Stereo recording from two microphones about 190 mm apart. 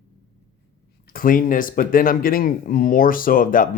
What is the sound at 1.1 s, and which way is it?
Speech, 50° left (ahead or behind).